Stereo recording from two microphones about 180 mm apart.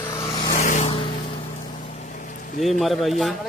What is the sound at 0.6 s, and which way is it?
Vehicle, 45° left (ahead or behind).